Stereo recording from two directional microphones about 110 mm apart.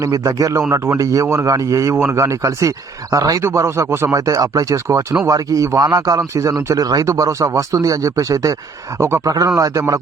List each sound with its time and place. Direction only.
0.0 s a man's voice: 30° right (ahead or behind)
2.0 s speech: 15° right (ahead or behind)
2.2 s a man's voice: 30° right (ahead or behind)